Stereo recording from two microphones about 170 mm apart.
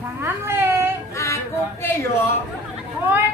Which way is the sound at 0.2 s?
15° right (ahead or behind).